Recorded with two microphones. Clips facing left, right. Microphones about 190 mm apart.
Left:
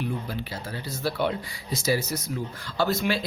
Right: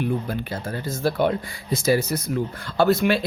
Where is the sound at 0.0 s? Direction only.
55° right (ahead or behind).